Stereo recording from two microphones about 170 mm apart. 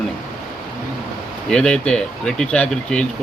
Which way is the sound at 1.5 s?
5° left (ahead or behind).